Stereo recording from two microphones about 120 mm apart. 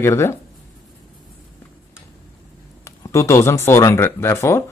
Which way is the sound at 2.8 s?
25° left (ahead or behind).